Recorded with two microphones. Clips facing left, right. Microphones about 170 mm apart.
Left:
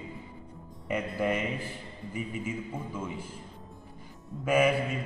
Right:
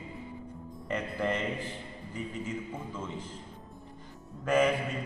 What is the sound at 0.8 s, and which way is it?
A man's voice, 10° left (ahead or behind).